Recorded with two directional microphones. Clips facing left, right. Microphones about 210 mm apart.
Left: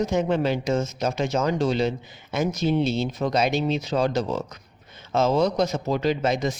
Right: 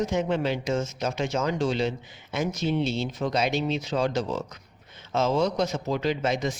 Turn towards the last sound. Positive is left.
turn(degrees=40)  # may be behind; listen again after turning